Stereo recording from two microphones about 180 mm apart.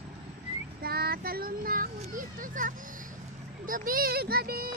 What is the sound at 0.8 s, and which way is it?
A child's voice, 55° right (ahead or behind).